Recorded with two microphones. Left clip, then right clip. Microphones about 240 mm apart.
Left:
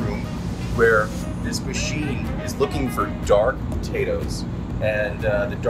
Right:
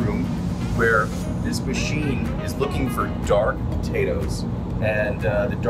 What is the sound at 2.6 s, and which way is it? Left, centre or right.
Speech, centre.